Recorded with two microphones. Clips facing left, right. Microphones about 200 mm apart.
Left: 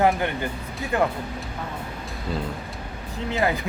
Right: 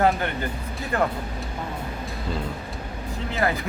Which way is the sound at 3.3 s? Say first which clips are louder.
Left 1 dB; 15° left (ahead or behind).